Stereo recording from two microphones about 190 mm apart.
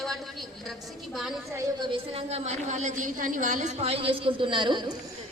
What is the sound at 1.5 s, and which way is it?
A woman's voice, 25° right (ahead or behind).